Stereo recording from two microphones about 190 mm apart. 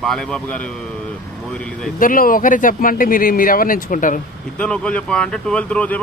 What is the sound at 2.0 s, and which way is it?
Speech, 45° left (ahead or behind).